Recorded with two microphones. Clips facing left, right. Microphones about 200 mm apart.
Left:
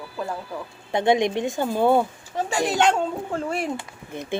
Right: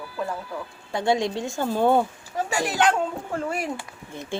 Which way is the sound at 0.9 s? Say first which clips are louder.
Left 3 dB; 20° left (ahead or behind).